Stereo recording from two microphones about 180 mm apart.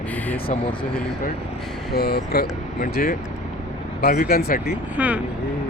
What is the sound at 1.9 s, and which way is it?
Speech, 60° left (ahead or behind).